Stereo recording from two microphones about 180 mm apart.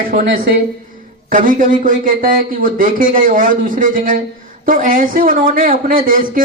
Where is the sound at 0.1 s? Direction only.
50° right (ahead or behind).